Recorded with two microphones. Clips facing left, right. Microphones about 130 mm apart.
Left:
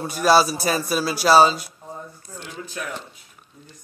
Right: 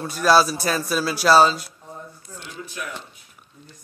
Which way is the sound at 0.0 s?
5° left (ahead or behind).